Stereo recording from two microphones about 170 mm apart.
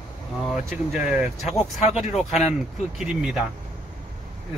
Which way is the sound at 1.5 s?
40° left (ahead or behind).